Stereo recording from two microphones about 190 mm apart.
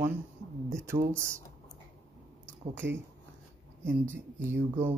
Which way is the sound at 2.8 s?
70° right (ahead or behind).